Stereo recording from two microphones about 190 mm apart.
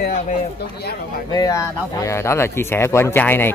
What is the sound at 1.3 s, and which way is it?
Speech, 20° left (ahead or behind).